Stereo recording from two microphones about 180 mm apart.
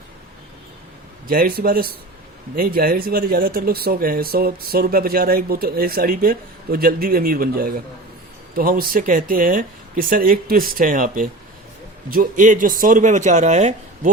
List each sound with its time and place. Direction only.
1.3 s speech: 55° right (ahead or behind)